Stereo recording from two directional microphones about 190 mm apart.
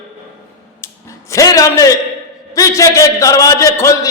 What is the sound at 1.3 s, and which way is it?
A man's voice, 15° left (ahead or behind).